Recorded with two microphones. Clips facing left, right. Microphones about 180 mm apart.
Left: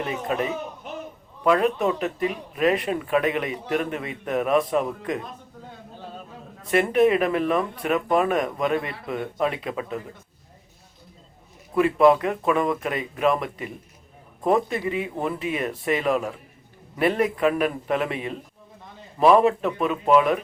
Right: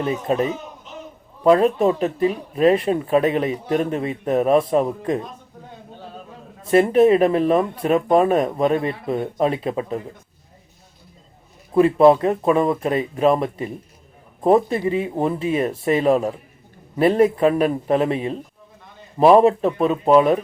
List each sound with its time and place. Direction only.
0.0 s speech: 30° right (ahead or behind)
0.9 s a sound: 55° left (ahead or behind)
1.5 s speech: 30° right (ahead or behind)
6.6 s speech: 30° right (ahead or behind)
11.7 s speech: 30° right (ahead or behind)